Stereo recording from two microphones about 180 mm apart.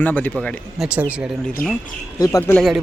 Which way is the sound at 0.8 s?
5° right (ahead or behind).